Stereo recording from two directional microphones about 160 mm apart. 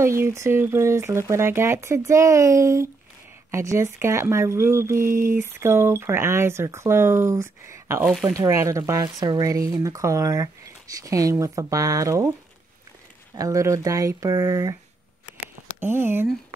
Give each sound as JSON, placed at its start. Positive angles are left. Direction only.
{"t": 0.0, "sound": "speech", "side_deg": -15}
{"t": 8.0, "sound": "speech", "side_deg": -5}
{"t": 8.3, "sound": "speech", "side_deg": -20}
{"t": 13.3, "sound": "speech", "side_deg": -20}
{"t": 15.8, "sound": "speech", "side_deg": -15}